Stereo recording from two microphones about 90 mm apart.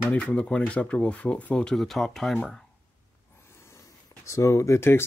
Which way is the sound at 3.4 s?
30° left (ahead or behind).